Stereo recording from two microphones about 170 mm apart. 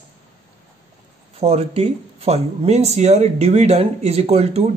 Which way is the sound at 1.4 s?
35° right (ahead or behind).